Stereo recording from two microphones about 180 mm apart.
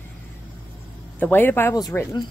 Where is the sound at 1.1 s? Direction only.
10° left (ahead or behind).